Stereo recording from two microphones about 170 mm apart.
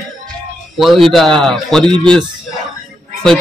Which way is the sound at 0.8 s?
Centre (ahead or behind).